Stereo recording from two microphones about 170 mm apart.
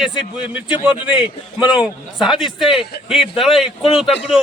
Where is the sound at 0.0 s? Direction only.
5° right (ahead or behind).